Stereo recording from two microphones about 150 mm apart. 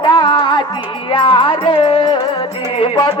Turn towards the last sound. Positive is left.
turn(degrees=30)  # may be behind; listen again after turning